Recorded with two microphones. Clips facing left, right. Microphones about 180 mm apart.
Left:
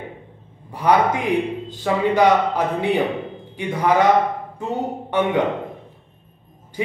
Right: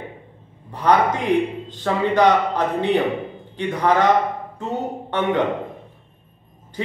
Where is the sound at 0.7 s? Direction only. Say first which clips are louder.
Even; 10° left (ahead or behind).